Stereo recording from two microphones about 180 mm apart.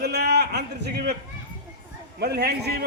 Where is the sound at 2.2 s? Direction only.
65° right (ahead or behind).